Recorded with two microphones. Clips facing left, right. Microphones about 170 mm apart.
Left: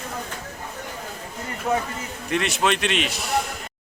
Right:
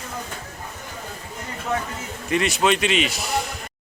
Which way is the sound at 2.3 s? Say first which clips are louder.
Right 2 dB; centre (ahead or behind).